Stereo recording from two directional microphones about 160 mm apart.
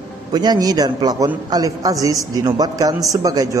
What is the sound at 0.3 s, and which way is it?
A man's voice, 25° right (ahead or behind).